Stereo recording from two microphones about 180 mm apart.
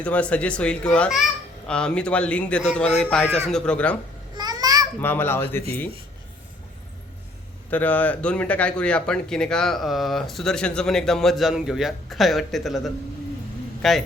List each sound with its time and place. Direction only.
0.0 s speech: 5° left (ahead or behind)
4.4 s a sound: 20° right (ahead or behind)
4.9 s speech: 10° left (ahead or behind)
7.7 s speech: 10° left (ahead or behind)